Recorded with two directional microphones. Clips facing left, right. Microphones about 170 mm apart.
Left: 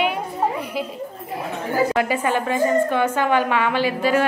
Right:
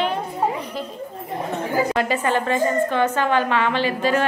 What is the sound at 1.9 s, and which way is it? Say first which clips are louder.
A woman's voice: even; 10° left (ahead or behind).